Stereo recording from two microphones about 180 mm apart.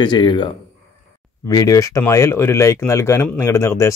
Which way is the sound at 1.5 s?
20° left (ahead or behind).